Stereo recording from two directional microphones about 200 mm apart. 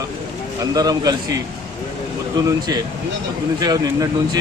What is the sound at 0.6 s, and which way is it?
A man's voice, 20° right (ahead or behind).